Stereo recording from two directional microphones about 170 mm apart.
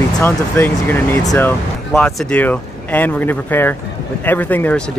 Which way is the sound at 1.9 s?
Centre (ahead or behind).